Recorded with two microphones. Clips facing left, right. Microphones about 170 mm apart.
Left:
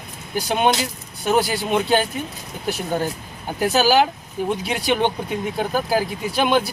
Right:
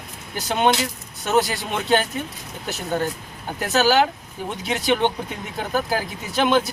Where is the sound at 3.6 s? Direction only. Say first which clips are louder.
Left 2 dB; 15° left (ahead or behind).